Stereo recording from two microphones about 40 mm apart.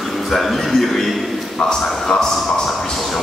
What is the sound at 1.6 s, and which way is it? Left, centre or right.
Speech, centre.